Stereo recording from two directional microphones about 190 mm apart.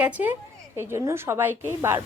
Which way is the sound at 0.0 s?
10° right (ahead or behind).